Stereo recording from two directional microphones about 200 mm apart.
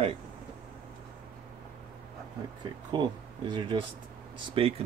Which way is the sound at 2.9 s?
20° right (ahead or behind).